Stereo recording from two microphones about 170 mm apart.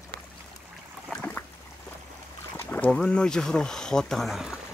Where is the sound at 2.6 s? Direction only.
10° left (ahead or behind).